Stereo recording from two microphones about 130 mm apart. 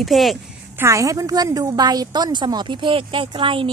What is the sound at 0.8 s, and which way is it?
A woman's voice, 25° right (ahead or behind).